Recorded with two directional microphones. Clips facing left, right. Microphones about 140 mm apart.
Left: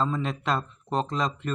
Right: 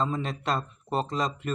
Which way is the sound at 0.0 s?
Centre (ahead or behind).